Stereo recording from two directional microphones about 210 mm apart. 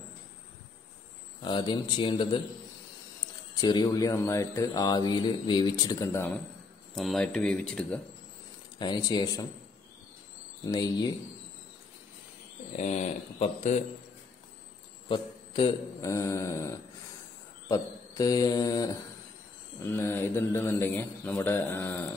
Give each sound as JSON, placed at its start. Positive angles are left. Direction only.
{"t": 1.4, "sound": "a man's voice", "side_deg": 20}
{"t": 3.6, "sound": "speech", "side_deg": 20}
{"t": 8.7, "sound": "a man's voice", "side_deg": 20}
{"t": 10.6, "sound": "a man's voice", "side_deg": 20}
{"t": 12.7, "sound": "speech", "side_deg": 30}
{"t": 15.0, "sound": "speech", "side_deg": 25}
{"t": 16.1, "sound": "speech", "side_deg": 15}